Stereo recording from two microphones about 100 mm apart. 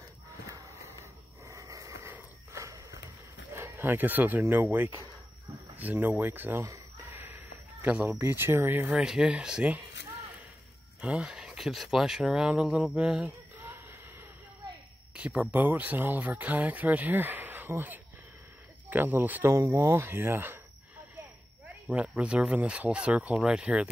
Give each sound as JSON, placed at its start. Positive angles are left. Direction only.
{"t": 1.5, "sound": "a sound", "side_deg": -35}
{"t": 2.5, "sound": "horse", "side_deg": -30}
{"t": 3.5, "sound": "speech", "side_deg": -25}
{"t": 6.6, "sound": "a sound", "side_deg": -30}
{"t": 8.2, "sound": "speech", "side_deg": -25}
{"t": 8.9, "sound": "speech", "side_deg": -5}
{"t": 11.0, "sound": "speech", "side_deg": -10}
{"t": 15.1, "sound": "speech", "side_deg": -10}
{"t": 21.8, "sound": "speech", "side_deg": -15}